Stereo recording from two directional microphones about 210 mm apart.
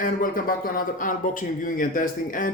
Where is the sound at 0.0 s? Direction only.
40° left (ahead or behind).